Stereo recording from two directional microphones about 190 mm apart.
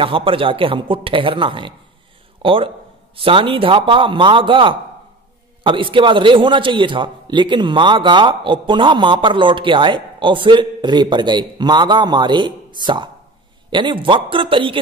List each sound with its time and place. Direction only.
0.0 s a man's voice: 30° right (ahead or behind)